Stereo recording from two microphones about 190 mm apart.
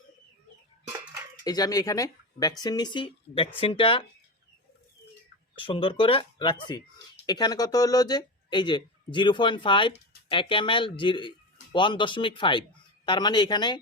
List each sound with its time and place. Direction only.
1.5 s speech: 20° left (ahead or behind)
5.5 s speech: 25° left (ahead or behind)